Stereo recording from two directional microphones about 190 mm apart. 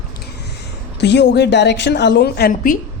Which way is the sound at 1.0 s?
65° left (ahead or behind).